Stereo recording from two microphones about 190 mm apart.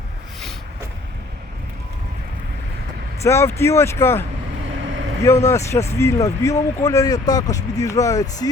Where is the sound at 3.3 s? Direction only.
15° left (ahead or behind).